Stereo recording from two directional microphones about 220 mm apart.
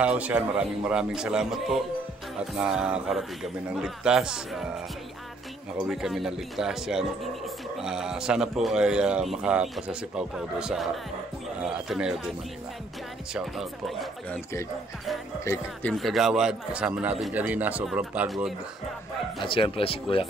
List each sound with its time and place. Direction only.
0.0 s a man's voice: 5° right (ahead or behind)
5.8 s a man's voice: centre (ahead or behind)
11.9 s a man's voice: 5° right (ahead or behind)
13.3 s a man's voice: centre (ahead or behind)
15.4 s a man's voice: 10° left (ahead or behind)
19.4 s speech: 25° left (ahead or behind)